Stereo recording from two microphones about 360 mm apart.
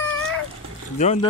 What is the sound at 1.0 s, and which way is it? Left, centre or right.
Speech, centre.